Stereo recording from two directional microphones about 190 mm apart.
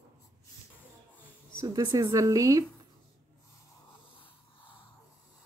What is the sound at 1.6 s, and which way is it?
A woman's voice, 15° right (ahead or behind).